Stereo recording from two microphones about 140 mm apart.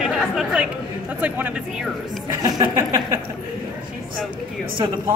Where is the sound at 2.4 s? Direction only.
25° right (ahead or behind).